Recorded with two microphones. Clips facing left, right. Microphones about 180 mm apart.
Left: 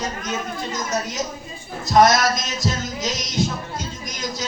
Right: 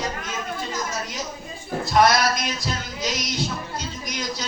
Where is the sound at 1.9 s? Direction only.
45° left (ahead or behind).